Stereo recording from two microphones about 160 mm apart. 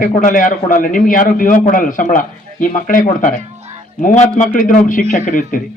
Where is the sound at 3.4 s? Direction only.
45° right (ahead or behind).